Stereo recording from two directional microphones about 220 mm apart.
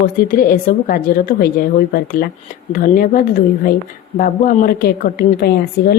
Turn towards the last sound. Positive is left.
turn(degrees=45)  # may be behind; listen again after turning